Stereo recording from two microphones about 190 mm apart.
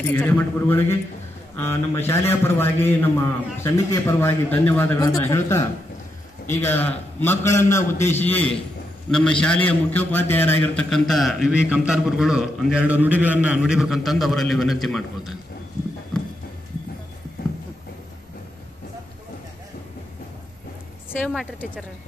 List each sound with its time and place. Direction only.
0.1 s a man's voice: 10° left (ahead or behind)
21.3 s a man's voice: centre (ahead or behind)